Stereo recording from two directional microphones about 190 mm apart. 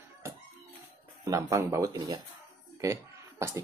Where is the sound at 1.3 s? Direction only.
15° right (ahead or behind).